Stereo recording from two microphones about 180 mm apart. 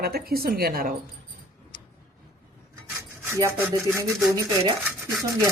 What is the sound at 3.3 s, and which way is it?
Speech, 15° right (ahead or behind).